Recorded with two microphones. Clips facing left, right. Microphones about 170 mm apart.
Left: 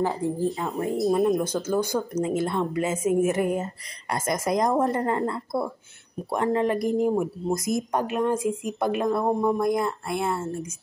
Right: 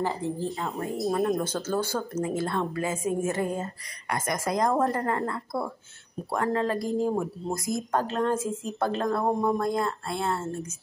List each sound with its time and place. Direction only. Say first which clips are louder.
0.0 s a woman's voice: left 4 dB; 15° left (ahead or behind)
0.5 s speech: left 4 dB; centre (ahead or behind)
1.4 s a woman's voice: left 3 dB; 15° left (ahead or behind)
9.2 s speech: left 2 dB; centre (ahead or behind)
9.6 s a woman's voice: left 3 dB; 15° left (ahead or behind)